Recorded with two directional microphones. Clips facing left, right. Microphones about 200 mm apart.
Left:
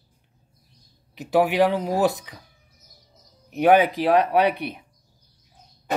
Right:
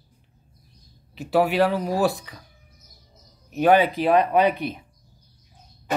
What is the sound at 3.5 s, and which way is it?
Speech, 15° left (ahead or behind).